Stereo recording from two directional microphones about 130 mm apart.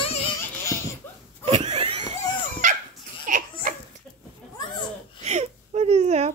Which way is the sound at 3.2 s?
85° right.